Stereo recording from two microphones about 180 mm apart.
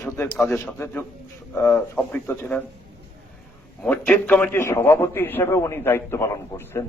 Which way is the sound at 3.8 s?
10° left (ahead or behind).